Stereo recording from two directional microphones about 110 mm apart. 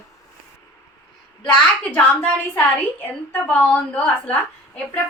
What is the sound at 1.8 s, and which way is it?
Speech, 15° left (ahead or behind).